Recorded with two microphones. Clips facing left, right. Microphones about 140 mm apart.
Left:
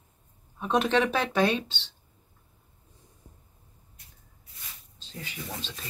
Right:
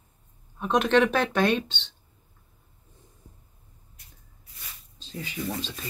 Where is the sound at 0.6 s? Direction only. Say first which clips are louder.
Right 3 dB; 5° left (ahead or behind).